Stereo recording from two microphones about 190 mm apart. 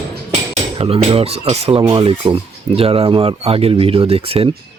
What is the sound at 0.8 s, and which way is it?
Speech, 30° right (ahead or behind).